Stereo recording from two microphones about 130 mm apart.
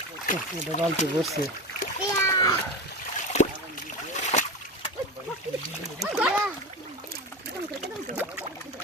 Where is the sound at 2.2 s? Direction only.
25° left (ahead or behind).